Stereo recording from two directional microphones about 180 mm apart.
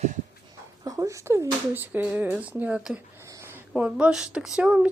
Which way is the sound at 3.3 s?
15° right (ahead or behind).